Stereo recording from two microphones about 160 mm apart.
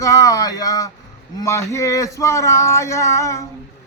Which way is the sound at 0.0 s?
20° left (ahead or behind).